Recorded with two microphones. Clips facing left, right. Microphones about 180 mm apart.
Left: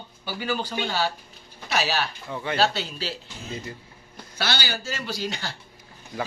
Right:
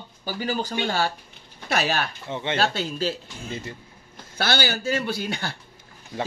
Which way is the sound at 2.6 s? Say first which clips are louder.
Left 1 dB; 50° right (ahead or behind).